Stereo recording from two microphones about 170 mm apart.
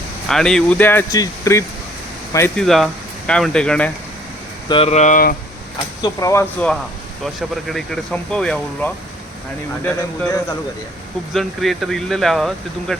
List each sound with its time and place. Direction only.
0.3 s speech: 5° left (ahead or behind); by 1.6 s 20° left (ahead or behind)
2.6 s speech: centre (ahead or behind)
4.7 s speech: 35° left (ahead or behind); by 5.4 s 55° left (ahead or behind)
6.0 s speech: 20° left (ahead or behind)
11.3 s speech: centre (ahead or behind)